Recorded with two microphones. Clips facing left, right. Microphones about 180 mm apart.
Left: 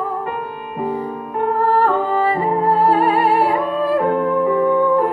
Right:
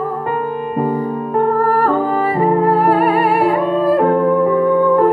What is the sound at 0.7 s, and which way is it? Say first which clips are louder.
Music: right 3 dB; 40° right (ahead or behind).